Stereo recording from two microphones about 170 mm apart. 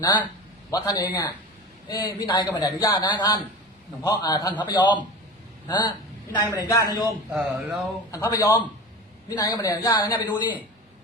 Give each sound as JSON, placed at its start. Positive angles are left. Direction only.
{"t": 0.0, "sound": "a man's voice", "side_deg": 25}
{"t": 7.3, "sound": "speech", "side_deg": -5}
{"t": 8.1, "sound": "a man's voice", "side_deg": 20}